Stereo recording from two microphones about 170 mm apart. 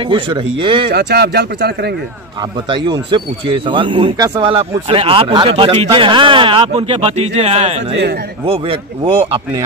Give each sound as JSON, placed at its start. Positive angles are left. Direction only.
{"t": 0.1, "sound": "speech", "side_deg": -30}
{"t": 0.9, "sound": "speech", "side_deg": -75}
{"t": 2.7, "sound": "speech", "side_deg": -30}